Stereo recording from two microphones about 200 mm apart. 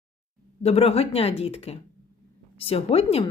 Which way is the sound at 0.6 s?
30° left (ahead or behind).